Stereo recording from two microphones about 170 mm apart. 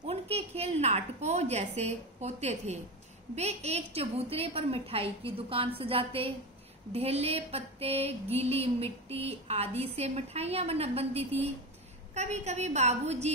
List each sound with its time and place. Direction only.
0.0 s a woman's voice: 35° right (ahead or behind)
3.3 s mantra: 40° right (ahead or behind)